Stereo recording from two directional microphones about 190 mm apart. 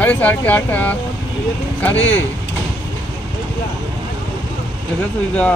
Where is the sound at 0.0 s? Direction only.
10° left (ahead or behind).